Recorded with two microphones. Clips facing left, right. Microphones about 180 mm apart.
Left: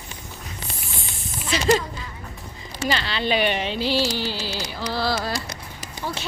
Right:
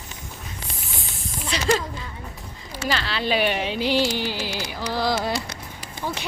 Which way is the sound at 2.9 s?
Centre (ahead or behind).